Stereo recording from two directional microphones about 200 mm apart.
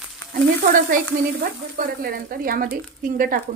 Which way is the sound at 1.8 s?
45° right (ahead or behind).